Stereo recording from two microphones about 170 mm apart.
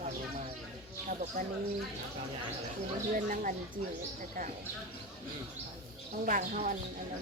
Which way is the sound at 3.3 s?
50° right (ahead or behind).